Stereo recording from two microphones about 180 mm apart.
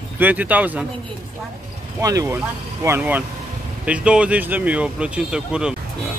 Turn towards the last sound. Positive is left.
turn(degrees=-5)  # may be behind; listen again after turning